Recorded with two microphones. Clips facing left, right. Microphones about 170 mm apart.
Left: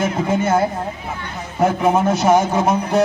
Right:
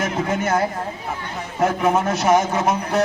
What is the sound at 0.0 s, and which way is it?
Speech, 30° left (ahead or behind).